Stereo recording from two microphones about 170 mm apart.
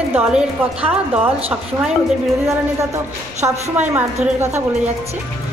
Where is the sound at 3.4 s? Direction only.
20° right (ahead or behind).